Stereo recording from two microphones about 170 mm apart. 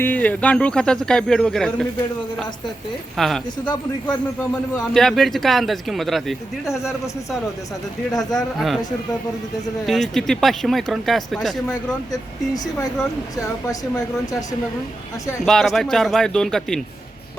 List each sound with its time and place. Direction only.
0.0 s speech: 10° left (ahead or behind)
3.2 s speech: centre (ahead or behind)
4.9 s speech: centre (ahead or behind)
8.1 s a man's voice: 20° left (ahead or behind)
8.5 s speech: centre (ahead or behind)
9.8 s speech: centre (ahead or behind)
15.4 s speech: centre (ahead or behind)